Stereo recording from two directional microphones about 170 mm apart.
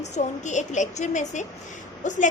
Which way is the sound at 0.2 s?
45° left (ahead or behind).